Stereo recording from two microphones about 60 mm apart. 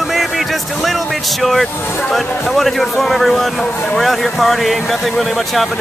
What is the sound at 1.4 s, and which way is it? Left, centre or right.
Speech, centre.